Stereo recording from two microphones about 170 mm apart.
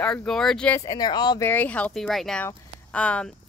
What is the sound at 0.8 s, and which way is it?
Speech, 25° left (ahead or behind).